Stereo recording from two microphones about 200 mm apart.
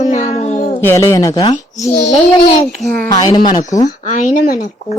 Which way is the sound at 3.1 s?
20° left (ahead or behind).